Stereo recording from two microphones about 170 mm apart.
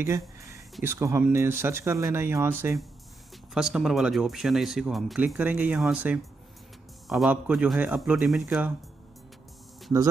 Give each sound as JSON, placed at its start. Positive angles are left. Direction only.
{"t": 0.0, "sound": "a sound", "side_deg": -15}
{"t": 0.8, "sound": "speech", "side_deg": -15}
{"t": 3.5, "sound": "speech", "side_deg": -5}